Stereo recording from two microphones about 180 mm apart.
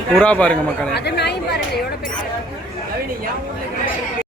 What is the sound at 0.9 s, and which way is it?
Speech, 65° left (ahead or behind).